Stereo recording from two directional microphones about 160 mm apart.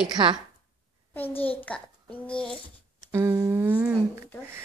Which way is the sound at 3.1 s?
15° right (ahead or behind).